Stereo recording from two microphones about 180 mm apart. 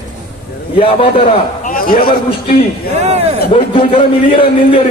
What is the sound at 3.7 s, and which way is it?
A man's voice, 30° left (ahead or behind).